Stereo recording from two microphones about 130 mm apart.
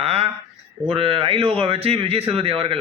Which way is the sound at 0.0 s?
50° right (ahead or behind).